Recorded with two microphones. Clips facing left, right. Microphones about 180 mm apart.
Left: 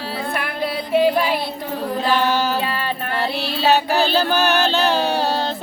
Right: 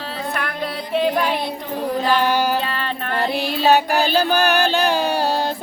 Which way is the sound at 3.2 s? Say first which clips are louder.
Right 4 dB; 15° right (ahead or behind).